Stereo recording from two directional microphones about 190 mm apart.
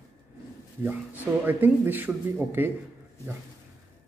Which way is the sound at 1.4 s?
10° right (ahead or behind).